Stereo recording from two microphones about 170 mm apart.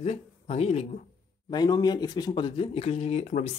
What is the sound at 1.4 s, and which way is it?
Speech, 25° left (ahead or behind).